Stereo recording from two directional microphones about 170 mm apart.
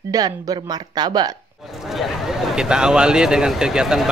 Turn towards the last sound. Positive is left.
turn(degrees=-5)  # may be behind; listen again after turning